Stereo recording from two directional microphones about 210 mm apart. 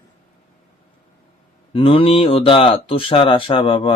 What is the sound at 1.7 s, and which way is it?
Speech, 25° left (ahead or behind).